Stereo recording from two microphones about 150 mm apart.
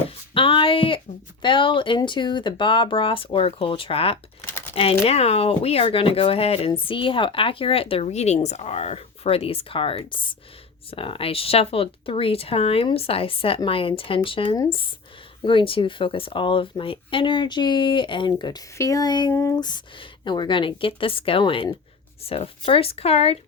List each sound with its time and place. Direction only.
0.3 s speech: 35° left (ahead or behind)
19.3 s a sound: 20° left (ahead or behind)
20.2 s speech: 30° left (ahead or behind)